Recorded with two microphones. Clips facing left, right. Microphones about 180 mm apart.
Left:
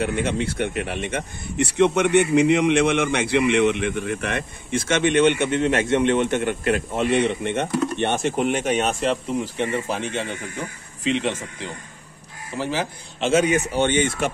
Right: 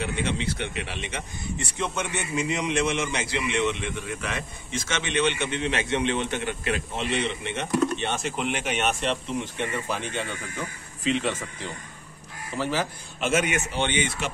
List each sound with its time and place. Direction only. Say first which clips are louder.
0.0 s speech: left 5 dB; 50° left (ahead or behind); by 9.7 s 35° left (ahead or behind)
11.1 s a man's voice: left 3 dB; 20° left (ahead or behind)
12.5 s speech: left 2 dB; 15° left (ahead or behind)
13.2 s speech: left 6 dB; 30° left (ahead or behind); by 14.3 s 50° left (ahead or behind)